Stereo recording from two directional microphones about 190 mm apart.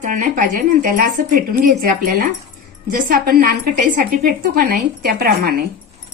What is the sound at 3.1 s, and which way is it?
A woman's voice, 55° right (ahead or behind).